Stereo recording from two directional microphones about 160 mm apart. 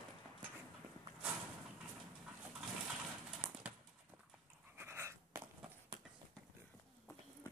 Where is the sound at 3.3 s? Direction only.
5° right (ahead or behind).